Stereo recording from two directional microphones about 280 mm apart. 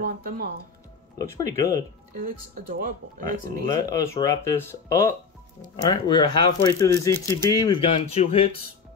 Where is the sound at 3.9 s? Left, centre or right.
Centre.